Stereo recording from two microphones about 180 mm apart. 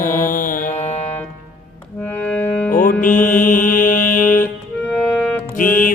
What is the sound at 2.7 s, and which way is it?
Mantra, 50° left (ahead or behind).